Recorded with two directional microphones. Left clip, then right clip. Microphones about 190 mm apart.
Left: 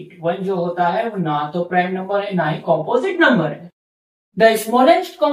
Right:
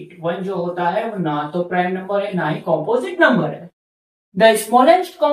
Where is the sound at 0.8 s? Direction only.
Centre (ahead or behind).